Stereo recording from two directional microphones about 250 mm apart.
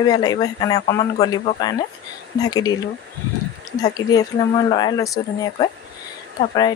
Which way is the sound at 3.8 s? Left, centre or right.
Centre.